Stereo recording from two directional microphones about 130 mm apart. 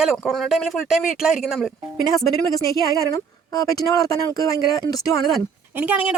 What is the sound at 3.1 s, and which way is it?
Speech, 30° left (ahead or behind).